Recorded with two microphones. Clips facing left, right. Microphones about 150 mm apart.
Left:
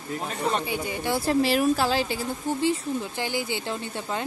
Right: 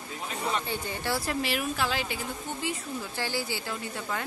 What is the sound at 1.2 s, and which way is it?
Speech, 35° left (ahead or behind).